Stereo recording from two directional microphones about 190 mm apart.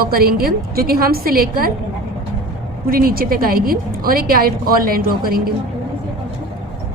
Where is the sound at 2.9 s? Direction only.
50° right (ahead or behind).